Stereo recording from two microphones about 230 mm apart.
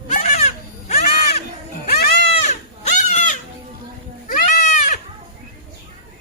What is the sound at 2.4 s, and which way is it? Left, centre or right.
Goat, left.